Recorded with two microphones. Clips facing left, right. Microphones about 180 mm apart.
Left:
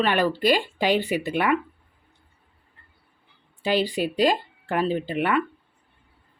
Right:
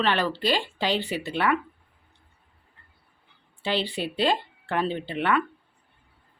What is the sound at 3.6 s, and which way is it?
Speech, 10° left (ahead or behind).